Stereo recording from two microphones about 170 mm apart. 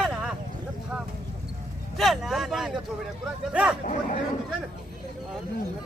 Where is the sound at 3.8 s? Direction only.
50° left (ahead or behind).